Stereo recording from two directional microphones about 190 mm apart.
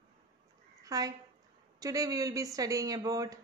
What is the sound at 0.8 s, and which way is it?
A woman's voice, 20° right (ahead or behind).